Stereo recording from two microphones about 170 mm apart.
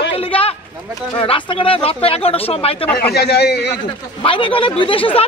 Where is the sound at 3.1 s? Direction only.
75° left (ahead or behind).